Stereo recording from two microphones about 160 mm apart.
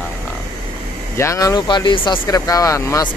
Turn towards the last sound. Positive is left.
turn(degrees=20)  # may be behind; listen again after turning